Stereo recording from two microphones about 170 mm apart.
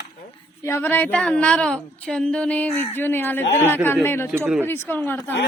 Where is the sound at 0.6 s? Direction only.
15° left (ahead or behind).